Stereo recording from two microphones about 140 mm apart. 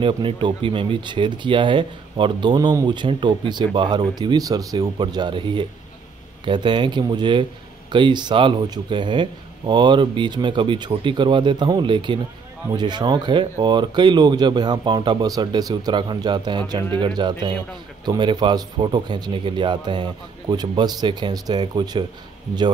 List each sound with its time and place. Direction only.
0.0 s speech: 35° right (ahead or behind)